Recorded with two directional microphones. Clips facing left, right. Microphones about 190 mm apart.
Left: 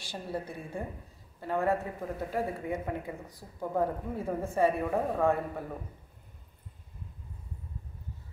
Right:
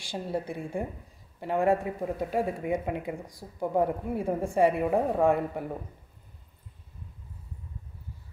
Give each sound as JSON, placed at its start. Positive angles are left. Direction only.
{"t": 0.0, "sound": "speech", "side_deg": -15}